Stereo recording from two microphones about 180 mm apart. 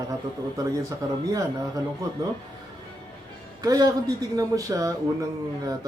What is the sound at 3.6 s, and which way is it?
A man's voice, 20° right (ahead or behind).